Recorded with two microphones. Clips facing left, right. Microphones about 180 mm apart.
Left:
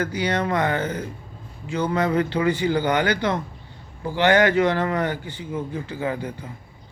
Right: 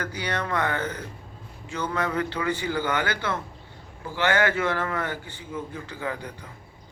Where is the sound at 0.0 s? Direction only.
10° left (ahead or behind).